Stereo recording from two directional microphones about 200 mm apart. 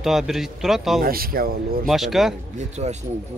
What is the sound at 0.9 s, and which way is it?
Speech, 45° right (ahead or behind).